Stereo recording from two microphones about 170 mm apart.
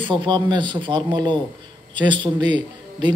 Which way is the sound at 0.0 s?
30° right (ahead or behind).